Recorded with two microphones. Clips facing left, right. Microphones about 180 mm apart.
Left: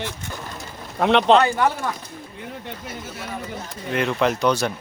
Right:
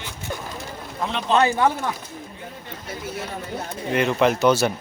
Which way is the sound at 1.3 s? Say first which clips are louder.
Even; 20° right (ahead or behind).